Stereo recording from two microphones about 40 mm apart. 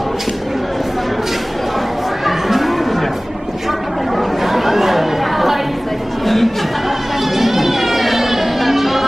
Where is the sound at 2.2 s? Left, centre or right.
Centre.